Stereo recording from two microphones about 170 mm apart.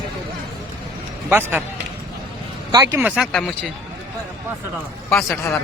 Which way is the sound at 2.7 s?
20° right (ahead or behind).